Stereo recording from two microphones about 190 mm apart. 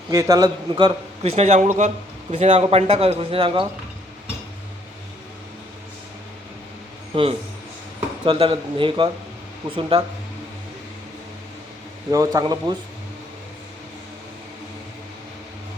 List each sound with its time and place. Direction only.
0.1 s a man's voice: 15° right (ahead or behind)
7.1 s a man's voice: 30° right (ahead or behind)
12.1 s a man's voice: 20° right (ahead or behind)